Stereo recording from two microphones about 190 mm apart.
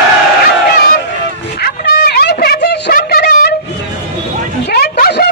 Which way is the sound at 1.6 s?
55° left (ahead or behind).